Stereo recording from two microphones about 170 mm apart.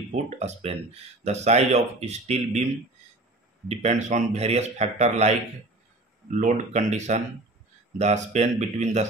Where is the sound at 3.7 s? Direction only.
40° right (ahead or behind).